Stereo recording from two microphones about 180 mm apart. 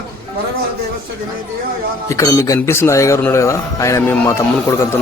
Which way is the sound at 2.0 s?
15° left (ahead or behind).